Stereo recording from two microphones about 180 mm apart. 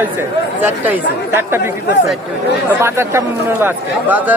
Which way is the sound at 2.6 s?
15° right (ahead or behind).